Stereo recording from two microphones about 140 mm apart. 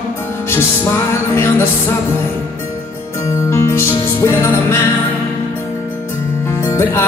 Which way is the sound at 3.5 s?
20° left (ahead or behind).